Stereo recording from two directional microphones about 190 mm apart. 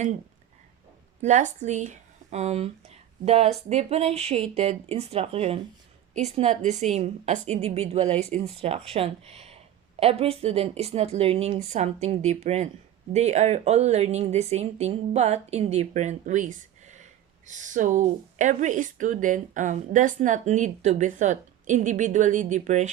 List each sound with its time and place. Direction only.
1.2 s speech: 40° right (ahead or behind)